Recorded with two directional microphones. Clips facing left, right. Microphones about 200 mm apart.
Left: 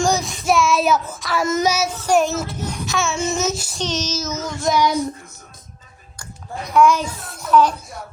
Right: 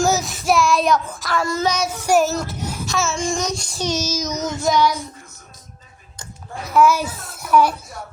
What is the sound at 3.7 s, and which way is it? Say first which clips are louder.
Child singing: right 1 dB; 10° right (ahead or behind).